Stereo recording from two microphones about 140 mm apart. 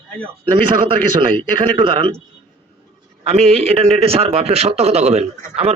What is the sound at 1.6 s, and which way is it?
Speech, 35° right (ahead or behind).